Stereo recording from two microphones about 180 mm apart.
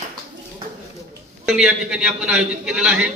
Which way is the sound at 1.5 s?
Centre (ahead or behind).